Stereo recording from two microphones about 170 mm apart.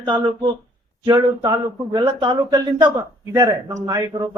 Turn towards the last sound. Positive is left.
turn(degrees=-20)  # may be behind; listen again after turning